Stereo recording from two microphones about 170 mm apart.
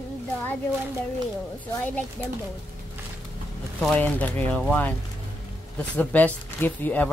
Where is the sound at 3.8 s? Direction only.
10° left (ahead or behind).